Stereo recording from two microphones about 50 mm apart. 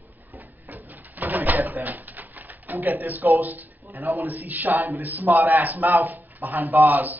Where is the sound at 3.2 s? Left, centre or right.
Right.